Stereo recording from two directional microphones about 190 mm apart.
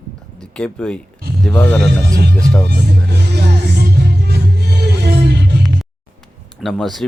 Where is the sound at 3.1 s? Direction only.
60° right (ahead or behind).